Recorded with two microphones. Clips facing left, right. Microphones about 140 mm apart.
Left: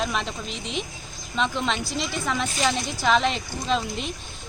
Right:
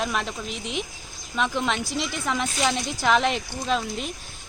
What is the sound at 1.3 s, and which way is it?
Speech, 10° right (ahead or behind).